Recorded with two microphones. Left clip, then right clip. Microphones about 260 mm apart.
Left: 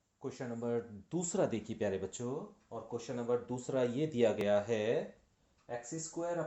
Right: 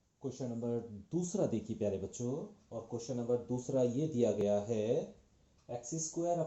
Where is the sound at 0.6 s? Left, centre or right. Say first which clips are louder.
Left 4 dB; left.